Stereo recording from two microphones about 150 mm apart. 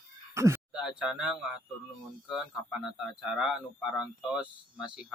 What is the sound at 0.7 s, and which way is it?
Speech, 5° right (ahead or behind).